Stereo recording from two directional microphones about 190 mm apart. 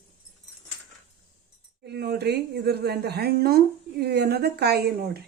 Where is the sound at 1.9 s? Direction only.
55° right (ahead or behind).